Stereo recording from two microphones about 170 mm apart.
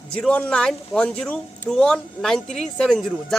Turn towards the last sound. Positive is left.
turn(degrees=0)  # may be behind; listen again after turning